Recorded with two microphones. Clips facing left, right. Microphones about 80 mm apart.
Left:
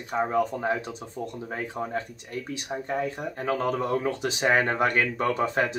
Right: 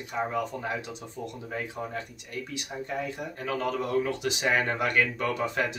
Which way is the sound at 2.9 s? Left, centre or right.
Left.